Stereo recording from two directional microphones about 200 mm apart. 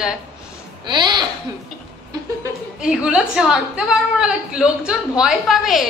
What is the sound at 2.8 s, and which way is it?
A woman's voice, 5° right (ahead or behind).